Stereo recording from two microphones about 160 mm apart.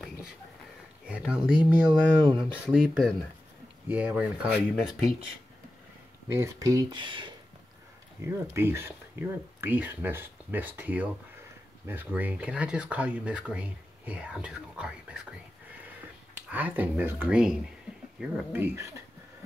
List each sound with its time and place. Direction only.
1.0 s speech: 5° right (ahead or behind)
6.3 s speech: 20° right (ahead or behind)
8.2 s speech: 15° right (ahead or behind)
16.4 s speech: 10° right (ahead or behind)